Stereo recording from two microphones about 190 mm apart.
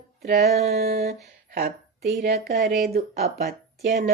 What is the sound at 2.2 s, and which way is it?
Speech, 55° right (ahead or behind).